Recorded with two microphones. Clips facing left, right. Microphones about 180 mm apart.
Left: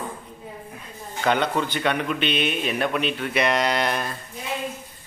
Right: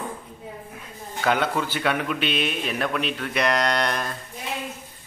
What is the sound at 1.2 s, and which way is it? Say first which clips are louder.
A man's voice: left 1 dB; 5° right (ahead or behind).